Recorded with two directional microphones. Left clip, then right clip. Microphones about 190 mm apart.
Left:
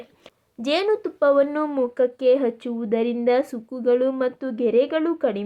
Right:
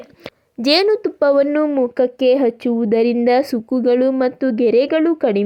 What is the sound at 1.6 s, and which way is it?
Speech, 15° right (ahead or behind).